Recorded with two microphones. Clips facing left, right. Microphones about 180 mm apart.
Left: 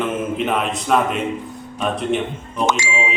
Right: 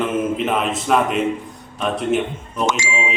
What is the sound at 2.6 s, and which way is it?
Speech, 55° left (ahead or behind).